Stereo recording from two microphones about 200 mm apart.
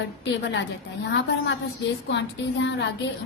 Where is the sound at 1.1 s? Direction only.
65° left (ahead or behind).